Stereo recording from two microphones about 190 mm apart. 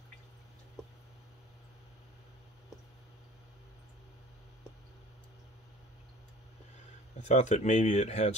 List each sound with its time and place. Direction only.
7.2 s speech: 35° left (ahead or behind)